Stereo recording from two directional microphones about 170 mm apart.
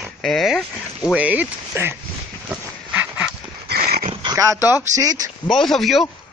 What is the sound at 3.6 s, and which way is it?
Dog, 65° right (ahead or behind).